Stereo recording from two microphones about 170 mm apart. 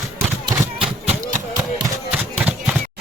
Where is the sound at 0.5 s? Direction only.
20° right (ahead or behind).